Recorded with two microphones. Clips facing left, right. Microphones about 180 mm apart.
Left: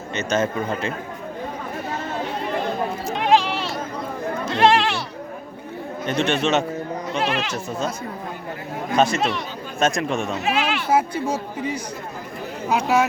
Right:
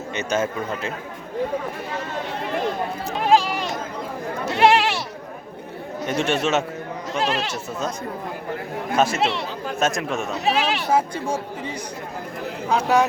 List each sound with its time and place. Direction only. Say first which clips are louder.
0.1 s speech: left 2 dB; 10° right (ahead or behind)
4.5 s speech: even; 10° right (ahead or behind)
6.1 s speech: left 1 dB; 10° right (ahead or behind)
7.2 s speech: right 1 dB; 35° right (ahead or behind)
9.0 s speech: left 1 dB; 5° right (ahead or behind)
10.4 s speech: right 1 dB; 35° right (ahead or behind)
10.9 s speech: left 2 dB; 10° left (ahead or behind)